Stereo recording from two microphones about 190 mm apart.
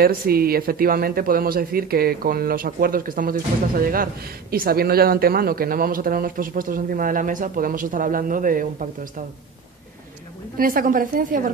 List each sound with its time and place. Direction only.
0.0 s speech: 50° right (ahead or behind)
10.6 s speech: 45° right (ahead or behind)